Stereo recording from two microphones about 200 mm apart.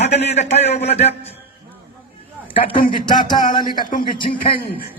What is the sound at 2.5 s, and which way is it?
A man's voice, 25° left (ahead or behind).